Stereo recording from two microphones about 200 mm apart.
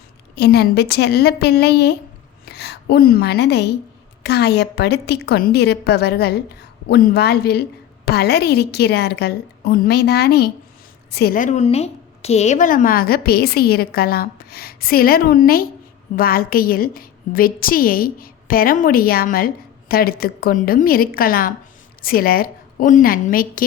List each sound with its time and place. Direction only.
0.3 s a woman's voice: 55° left (ahead or behind)